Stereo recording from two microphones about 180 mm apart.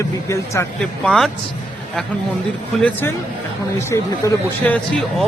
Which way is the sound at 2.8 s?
10° left (ahead or behind).